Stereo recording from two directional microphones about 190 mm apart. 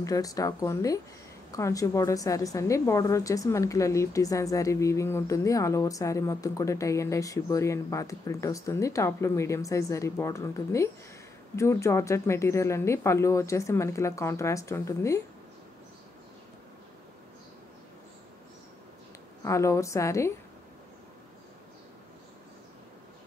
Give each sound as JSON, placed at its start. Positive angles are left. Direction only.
{"t": 0.0, "sound": "a woman's voice", "side_deg": 20}
{"t": 19.4, "sound": "a woman's voice", "side_deg": 15}